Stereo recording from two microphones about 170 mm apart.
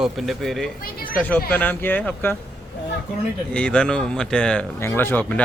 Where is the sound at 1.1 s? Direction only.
10° left (ahead or behind).